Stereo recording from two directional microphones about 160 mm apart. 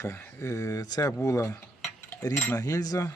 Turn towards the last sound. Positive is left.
turn(degrees=20)  # may be behind; listen again after turning